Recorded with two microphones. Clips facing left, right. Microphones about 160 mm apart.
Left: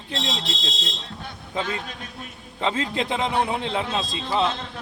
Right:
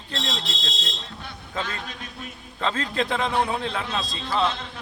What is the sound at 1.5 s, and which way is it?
A man's voice, 20° left (ahead or behind).